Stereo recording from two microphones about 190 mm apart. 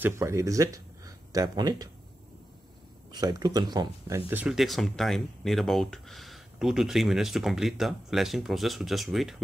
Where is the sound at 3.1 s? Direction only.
20° right (ahead or behind).